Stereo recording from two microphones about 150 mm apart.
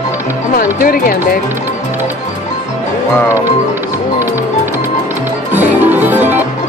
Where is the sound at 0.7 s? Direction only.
75° left (ahead or behind).